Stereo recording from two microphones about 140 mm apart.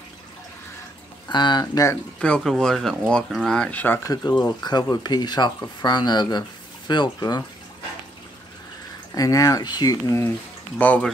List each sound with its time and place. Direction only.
1.3 s speech: 30° left (ahead or behind)
2.1 s speech: 5° left (ahead or behind)
4.1 s speech: 30° left (ahead or behind)
9.1 s speech: 25° left (ahead or behind)
10.8 s speech: 10° left (ahead or behind)